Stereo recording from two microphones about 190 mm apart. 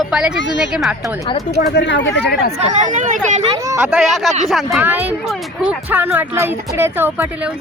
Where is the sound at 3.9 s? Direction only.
5° right (ahead or behind).